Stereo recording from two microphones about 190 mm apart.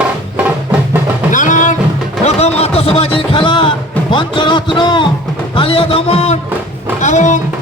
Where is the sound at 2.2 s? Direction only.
35° left (ahead or behind).